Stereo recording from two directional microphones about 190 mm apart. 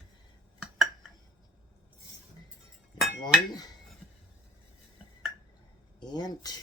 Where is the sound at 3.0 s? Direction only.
Centre (ahead or behind).